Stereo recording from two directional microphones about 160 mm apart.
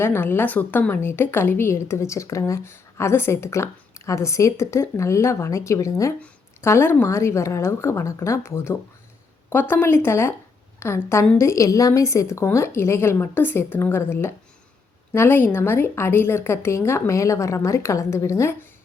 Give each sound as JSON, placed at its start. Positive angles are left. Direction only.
{"t": 0.0, "sound": "a woman's voice", "side_deg": 15}